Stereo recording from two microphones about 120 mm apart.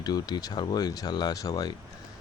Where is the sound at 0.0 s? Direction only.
35° left (ahead or behind).